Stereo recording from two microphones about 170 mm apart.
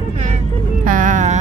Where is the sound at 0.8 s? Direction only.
50° right (ahead or behind).